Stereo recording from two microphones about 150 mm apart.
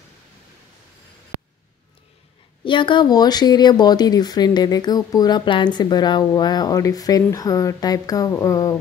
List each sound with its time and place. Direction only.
2.6 s speech: 35° left (ahead or behind)